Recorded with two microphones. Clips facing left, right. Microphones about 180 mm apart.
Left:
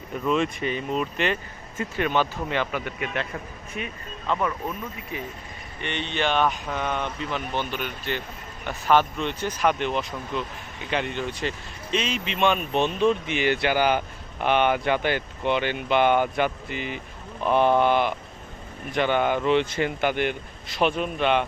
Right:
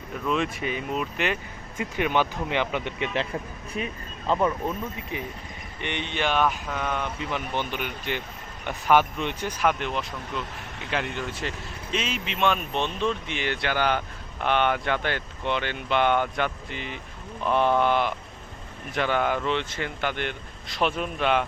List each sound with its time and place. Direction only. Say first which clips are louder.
0.3 s speech: left 3 dB; centre (ahead or behind); by 3.2 s 25° right (ahead or behind)
4.3 s speech: right 2 dB; 25° right (ahead or behind); by 7.1 s centre (ahead or behind)
7.7 s speech: left 1 dB; 15° right (ahead or behind)
19.4 s speech: left 6 dB; 10° left (ahead or behind)